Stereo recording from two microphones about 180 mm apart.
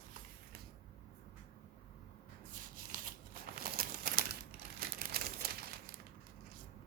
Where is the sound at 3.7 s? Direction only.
55° right (ahead or behind).